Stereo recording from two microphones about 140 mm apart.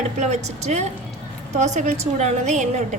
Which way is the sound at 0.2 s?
55° right (ahead or behind).